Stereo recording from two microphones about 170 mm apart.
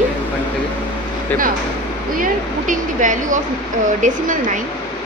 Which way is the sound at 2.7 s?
50° right (ahead or behind).